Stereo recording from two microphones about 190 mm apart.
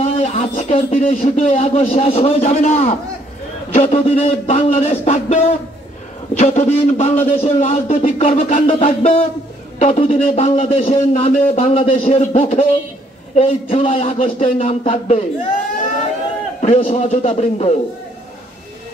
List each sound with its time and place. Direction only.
0.0 s a man's voice: 35° left (ahead or behind)
16.6 s a man's voice: 35° left (ahead or behind)